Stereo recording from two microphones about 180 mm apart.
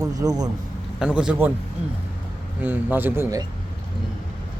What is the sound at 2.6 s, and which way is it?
Speech, 10° right (ahead or behind).